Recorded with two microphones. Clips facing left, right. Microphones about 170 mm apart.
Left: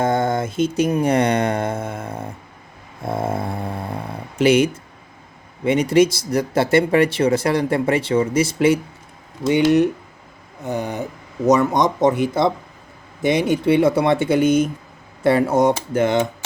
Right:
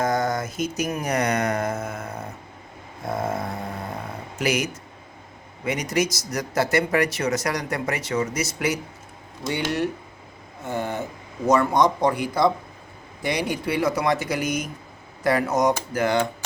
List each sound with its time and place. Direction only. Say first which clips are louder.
0.0 s speech: left 4 dB; 30° left (ahead or behind)